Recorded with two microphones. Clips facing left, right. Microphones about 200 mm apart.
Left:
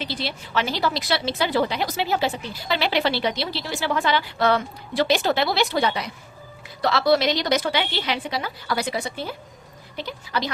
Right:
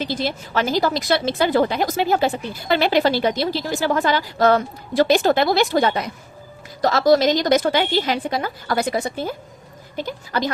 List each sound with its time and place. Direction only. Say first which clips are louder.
0.0 s a woman's voice: right 6 dB; 45° right (ahead or behind)